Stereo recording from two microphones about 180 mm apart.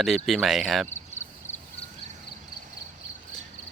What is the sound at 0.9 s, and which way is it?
Cricket, 40° left (ahead or behind).